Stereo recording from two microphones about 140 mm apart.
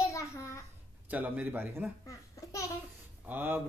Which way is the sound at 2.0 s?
20° left (ahead or behind).